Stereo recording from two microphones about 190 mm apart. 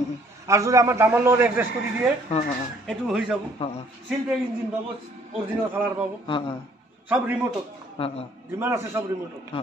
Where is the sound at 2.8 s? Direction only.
5° right (ahead or behind).